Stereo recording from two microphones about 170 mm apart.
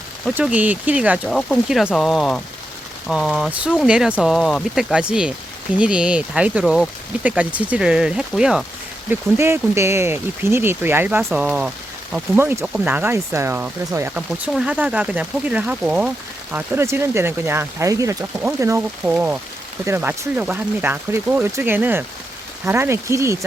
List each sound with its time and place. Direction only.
0.3 s speech: 10° right (ahead or behind)
1.3 s speech: centre (ahead or behind)
9.0 s speech: 15° right (ahead or behind)